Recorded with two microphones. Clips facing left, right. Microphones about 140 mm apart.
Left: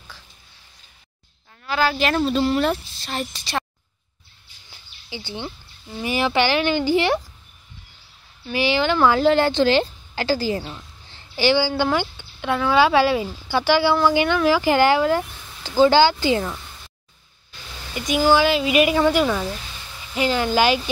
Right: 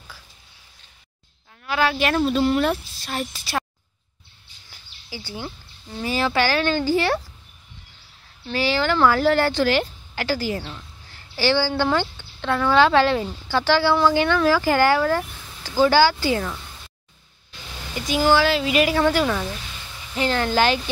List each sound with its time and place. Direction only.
1.7 s speech: centre (ahead or behind)
4.6 s bird: 25° left (ahead or behind)
6.0 s speech: 15° left (ahead or behind)
8.5 s a woman's voice: 15° left (ahead or behind)
18.3 s speech: 15° left (ahead or behind)